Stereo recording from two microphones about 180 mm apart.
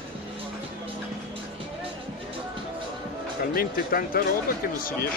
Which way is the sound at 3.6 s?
55° left (ahead or behind).